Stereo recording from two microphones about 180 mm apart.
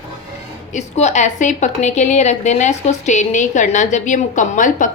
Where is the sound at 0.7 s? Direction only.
40° left (ahead or behind).